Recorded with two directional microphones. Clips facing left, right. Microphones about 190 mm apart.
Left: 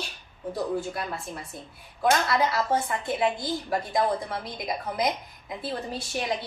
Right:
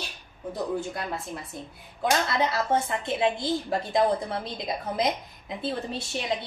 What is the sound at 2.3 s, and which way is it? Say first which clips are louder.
A woman's voice: even; 25° right (ahead or behind).